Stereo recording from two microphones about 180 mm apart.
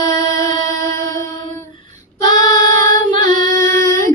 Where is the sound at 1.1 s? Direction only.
20° left (ahead or behind).